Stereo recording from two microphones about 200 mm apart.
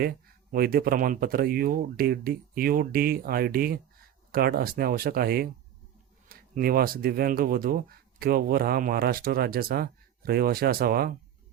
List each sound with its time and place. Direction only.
0.5 s speech: 50° right (ahead or behind)